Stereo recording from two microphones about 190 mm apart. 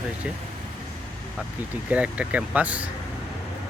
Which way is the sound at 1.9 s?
5° right (ahead or behind).